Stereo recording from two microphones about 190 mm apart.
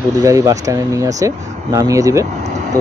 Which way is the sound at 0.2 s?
15° right (ahead or behind).